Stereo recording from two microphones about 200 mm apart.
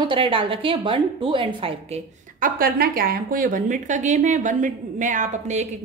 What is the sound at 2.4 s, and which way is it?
A woman's voice, 45° right (ahead or behind).